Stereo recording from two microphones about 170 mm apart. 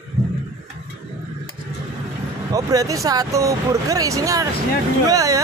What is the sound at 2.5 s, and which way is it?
Speech, 20° right (ahead or behind).